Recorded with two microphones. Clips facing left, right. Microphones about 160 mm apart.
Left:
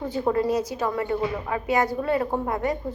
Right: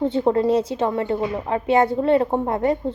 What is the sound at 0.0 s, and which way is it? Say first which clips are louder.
A woman's voice: right 5 dB; 25° right (ahead or behind).